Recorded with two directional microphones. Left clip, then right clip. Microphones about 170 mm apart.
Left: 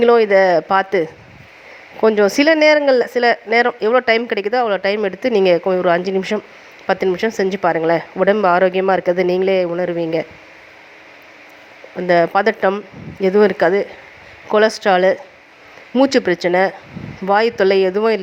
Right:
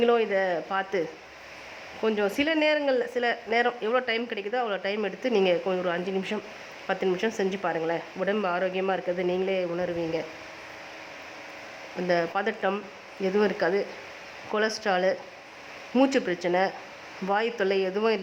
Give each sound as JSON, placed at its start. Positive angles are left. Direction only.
{"t": 0.0, "sound": "speech", "side_deg": 40}
{"t": 12.0, "sound": "speech", "side_deg": 35}